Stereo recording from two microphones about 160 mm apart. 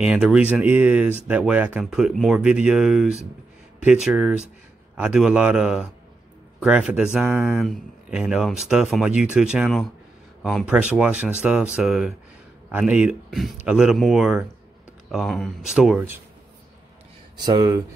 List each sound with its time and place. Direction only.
0.0 s speech: 5° right (ahead or behind)
17.5 s speech: 20° right (ahead or behind)